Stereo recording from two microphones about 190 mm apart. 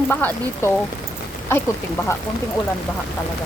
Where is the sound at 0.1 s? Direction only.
10° left (ahead or behind).